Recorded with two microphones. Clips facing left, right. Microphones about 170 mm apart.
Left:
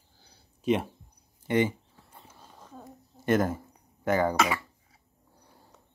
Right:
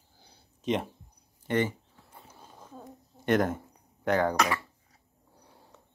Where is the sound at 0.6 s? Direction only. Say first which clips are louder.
Left 3 dB; 5° left (ahead or behind).